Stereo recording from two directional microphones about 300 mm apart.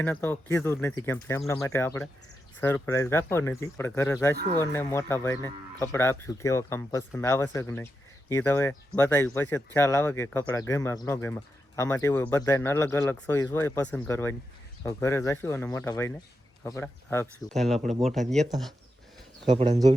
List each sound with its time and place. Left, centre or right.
0.0 s speech: centre
19.5 s speech: centre